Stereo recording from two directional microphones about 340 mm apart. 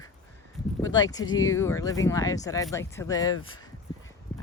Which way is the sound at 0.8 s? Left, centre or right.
Centre.